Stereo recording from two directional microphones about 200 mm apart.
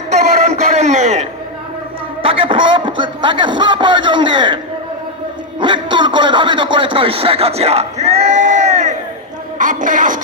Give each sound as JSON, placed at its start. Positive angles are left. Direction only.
{"t": 0.4, "sound": "a sound", "side_deg": -35}
{"t": 2.2, "sound": "a man's voice", "side_deg": -25}
{"t": 9.6, "sound": "music", "side_deg": -40}